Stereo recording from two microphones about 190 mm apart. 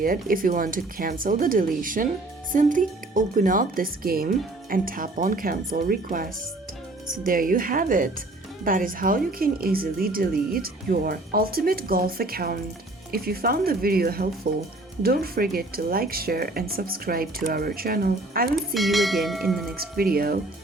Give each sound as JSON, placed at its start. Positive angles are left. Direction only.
{"t": 0.0, "sound": "a woman's voice", "side_deg": -50}
{"t": 18.5, "sound": "speech", "side_deg": 0}
{"t": 19.7, "sound": "a woman's voice", "side_deg": -50}